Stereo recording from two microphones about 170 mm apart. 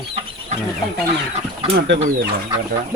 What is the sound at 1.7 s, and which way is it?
Speech, 90° right.